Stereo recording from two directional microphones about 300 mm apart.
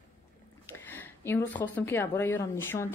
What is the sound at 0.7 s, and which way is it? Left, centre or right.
A woman's voice, centre.